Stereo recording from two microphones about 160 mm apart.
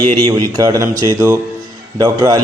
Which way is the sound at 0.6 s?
20° right (ahead or behind).